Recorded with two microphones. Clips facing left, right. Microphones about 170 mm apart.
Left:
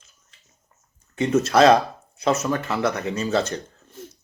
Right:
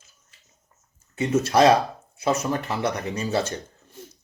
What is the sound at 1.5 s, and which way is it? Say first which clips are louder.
Speech: left 2 dB; 15° right (ahead or behind).